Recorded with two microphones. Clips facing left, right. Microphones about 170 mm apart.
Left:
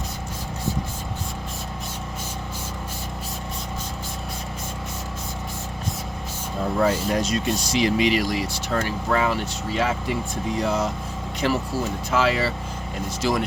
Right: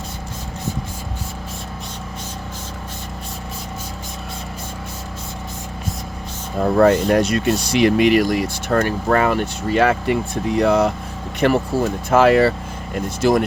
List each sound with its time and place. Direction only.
6.6 s speech: 60° right (ahead or behind)